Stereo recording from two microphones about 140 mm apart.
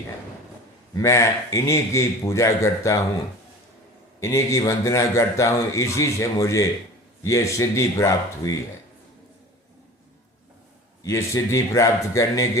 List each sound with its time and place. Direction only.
0.9 s a man's voice: 20° left (ahead or behind)
4.2 s a man's voice: 20° left (ahead or behind)
11.0 s a man's voice: 20° left (ahead or behind)